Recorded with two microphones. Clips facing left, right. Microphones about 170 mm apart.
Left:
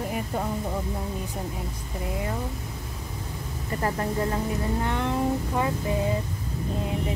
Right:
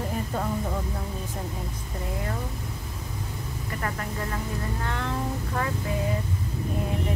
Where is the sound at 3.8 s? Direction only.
30° left (ahead or behind).